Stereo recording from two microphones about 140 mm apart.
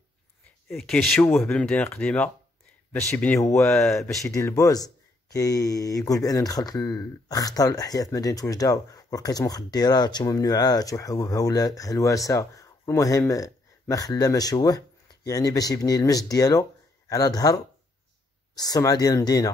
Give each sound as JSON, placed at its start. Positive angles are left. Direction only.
{"t": 0.7, "sound": "speech", "side_deg": 0}
{"t": 3.7, "sound": "speech", "side_deg": 0}
{"t": 4.3, "sound": "speech", "side_deg": 20}
{"t": 18.5, "sound": "speech", "side_deg": 25}